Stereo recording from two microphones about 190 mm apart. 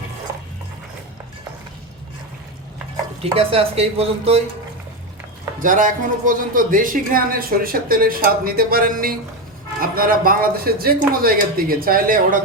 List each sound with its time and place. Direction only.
3.3 s speech: 30° right (ahead or behind)
5.5 s speech: 45° right (ahead or behind)